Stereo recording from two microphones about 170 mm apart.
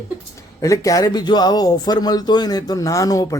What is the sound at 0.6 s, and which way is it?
Speech, 20° left (ahead or behind).